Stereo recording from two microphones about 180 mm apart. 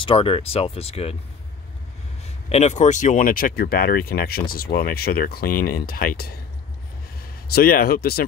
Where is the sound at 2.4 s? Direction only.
40° left (ahead or behind).